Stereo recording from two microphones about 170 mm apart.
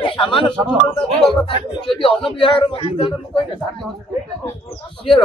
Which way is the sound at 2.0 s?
30° left (ahead or behind).